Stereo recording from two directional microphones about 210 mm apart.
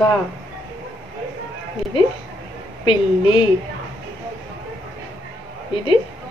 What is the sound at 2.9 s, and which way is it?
Speech, 25° left (ahead or behind).